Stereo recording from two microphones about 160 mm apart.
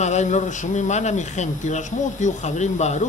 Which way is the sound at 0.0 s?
45° left (ahead or behind).